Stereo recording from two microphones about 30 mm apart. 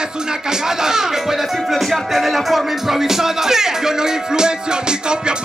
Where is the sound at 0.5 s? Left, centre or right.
Centre.